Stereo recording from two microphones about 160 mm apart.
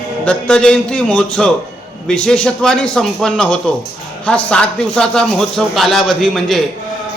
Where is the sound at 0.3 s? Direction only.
5° left (ahead or behind).